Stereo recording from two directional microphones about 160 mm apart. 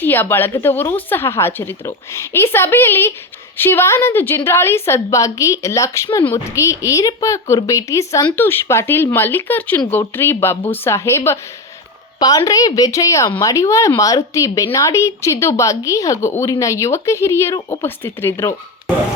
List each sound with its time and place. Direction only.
0.0 s speech: 10° left (ahead or behind)
12.5 s speech: 20° left (ahead or behind)